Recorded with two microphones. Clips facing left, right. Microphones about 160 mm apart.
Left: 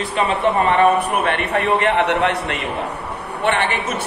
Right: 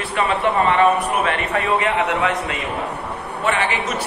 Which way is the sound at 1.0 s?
65° left (ahead or behind).